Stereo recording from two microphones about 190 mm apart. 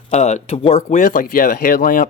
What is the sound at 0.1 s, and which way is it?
Speech, 35° left (ahead or behind).